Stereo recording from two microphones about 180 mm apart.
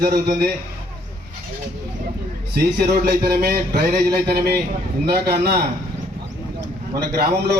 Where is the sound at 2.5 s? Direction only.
60° right (ahead or behind).